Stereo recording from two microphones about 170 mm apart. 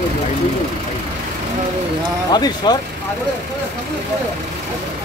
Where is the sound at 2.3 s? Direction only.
25° left (ahead or behind).